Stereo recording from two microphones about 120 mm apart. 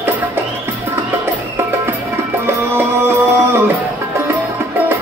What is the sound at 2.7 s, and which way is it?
Music, 20° right (ahead or behind).